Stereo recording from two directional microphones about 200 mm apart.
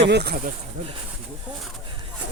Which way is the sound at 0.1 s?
55° right (ahead or behind).